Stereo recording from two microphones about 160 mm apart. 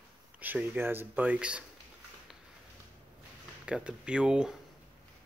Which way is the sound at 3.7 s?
5° right (ahead or behind).